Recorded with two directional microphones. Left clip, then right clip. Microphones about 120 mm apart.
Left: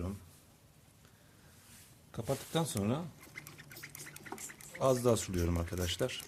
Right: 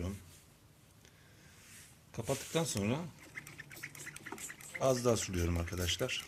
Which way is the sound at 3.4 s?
65° left (ahead or behind).